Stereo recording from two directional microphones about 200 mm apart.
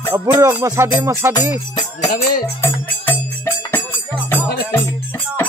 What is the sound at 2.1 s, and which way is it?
Music, 45° left (ahead or behind).